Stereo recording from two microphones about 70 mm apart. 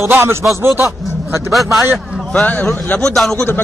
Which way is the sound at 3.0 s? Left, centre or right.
Centre.